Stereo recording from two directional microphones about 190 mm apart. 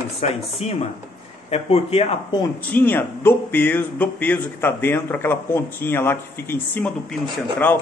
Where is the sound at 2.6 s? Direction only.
10° left (ahead or behind).